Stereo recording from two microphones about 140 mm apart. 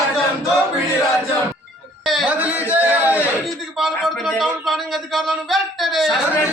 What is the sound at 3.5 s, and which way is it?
A man's voice, centre (ahead or behind).